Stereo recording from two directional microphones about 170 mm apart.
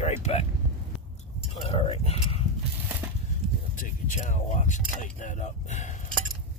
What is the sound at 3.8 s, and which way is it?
Vehicle, 50° left (ahead or behind).